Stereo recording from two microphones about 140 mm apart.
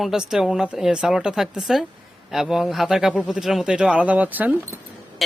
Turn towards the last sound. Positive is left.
turn(degrees=-10)  # may be behind; listen again after turning